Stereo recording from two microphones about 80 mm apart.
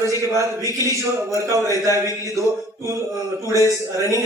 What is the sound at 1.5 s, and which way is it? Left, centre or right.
Speech, right.